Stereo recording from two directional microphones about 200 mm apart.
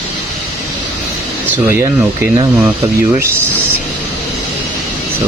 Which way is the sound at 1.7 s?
15° right (ahead or behind).